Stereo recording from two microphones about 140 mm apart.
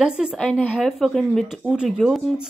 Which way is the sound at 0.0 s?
5° right (ahead or behind).